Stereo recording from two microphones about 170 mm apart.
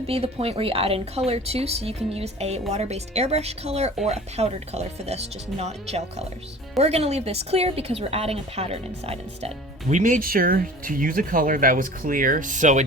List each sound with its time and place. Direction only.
0.1 s speech: 35° right (ahead or behind)
9.9 s speech: 50° right (ahead or behind)